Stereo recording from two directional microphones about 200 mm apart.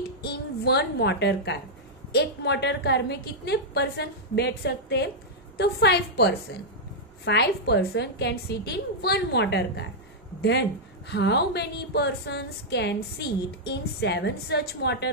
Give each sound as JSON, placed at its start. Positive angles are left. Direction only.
{"t": 0.2, "sound": "a woman's voice", "side_deg": 55}
{"t": 11.1, "sound": "a woman's voice", "side_deg": 60}